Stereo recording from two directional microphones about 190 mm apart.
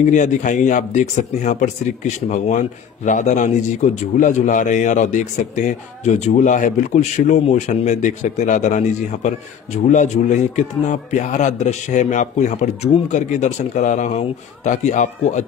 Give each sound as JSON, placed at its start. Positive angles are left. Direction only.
{"t": 0.0, "sound": "a man's voice", "side_deg": 40}